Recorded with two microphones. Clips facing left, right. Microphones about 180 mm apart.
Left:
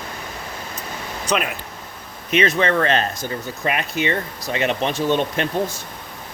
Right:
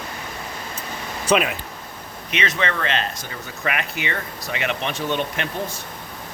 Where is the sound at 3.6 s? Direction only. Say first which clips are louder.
Left 4 dB; 30° left (ahead or behind).